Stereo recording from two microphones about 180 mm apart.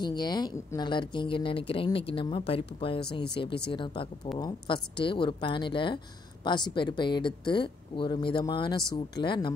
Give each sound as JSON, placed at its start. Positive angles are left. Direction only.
{"t": 0.0, "sound": "speech", "side_deg": 25}